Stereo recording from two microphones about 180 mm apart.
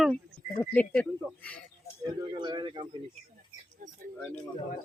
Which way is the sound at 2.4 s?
25° right (ahead or behind).